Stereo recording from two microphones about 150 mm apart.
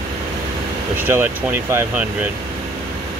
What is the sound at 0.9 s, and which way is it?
Speech, 15° right (ahead or behind).